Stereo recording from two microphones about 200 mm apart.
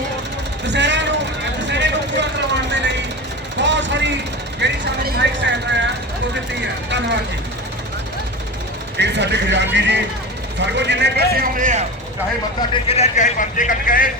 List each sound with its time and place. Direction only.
0.6 s speech: 60° right (ahead or behind)
1.6 s vehicle: 60° right (ahead or behind)
9.0 s speech: 60° right (ahead or behind); by 11.9 s 40° right (ahead or behind)
12.9 s speech: 35° left (ahead or behind)